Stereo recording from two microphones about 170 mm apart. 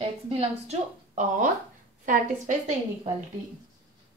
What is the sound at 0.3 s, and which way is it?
A woman's voice, 35° right (ahead or behind).